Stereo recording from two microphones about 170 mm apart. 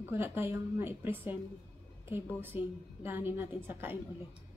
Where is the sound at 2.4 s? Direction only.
10° right (ahead or behind).